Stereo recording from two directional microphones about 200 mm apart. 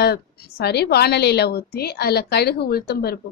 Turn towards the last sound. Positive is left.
turn(degrees=50)  # may be behind; listen again after turning